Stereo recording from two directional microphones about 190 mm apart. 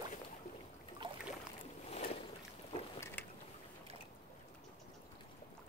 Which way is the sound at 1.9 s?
35° left (ahead or behind).